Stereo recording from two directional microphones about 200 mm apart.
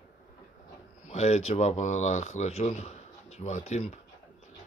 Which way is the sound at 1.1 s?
35° left (ahead or behind).